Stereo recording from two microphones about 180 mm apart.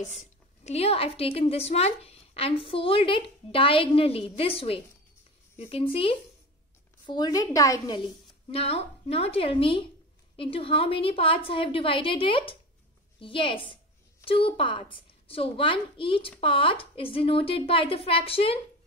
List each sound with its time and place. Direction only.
0.0 s a woman's voice: 40° left (ahead or behind)
7.1 s a woman's voice: 25° left (ahead or behind)
8.5 s a woman's voice: 35° left (ahead or behind)